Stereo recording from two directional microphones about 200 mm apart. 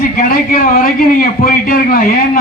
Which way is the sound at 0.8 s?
45° left (ahead or behind).